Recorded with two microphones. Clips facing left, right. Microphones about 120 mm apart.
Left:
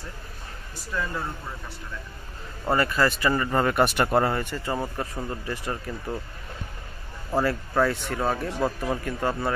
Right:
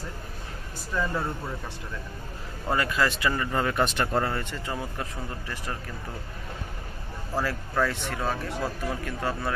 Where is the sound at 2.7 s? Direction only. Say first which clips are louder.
Left 3 dB; centre (ahead or behind).